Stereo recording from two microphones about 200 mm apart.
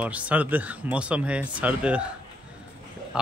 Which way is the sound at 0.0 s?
5° right (ahead or behind).